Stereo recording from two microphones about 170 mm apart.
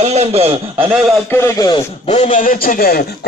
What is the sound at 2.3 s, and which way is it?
Speech, 50° left (ahead or behind).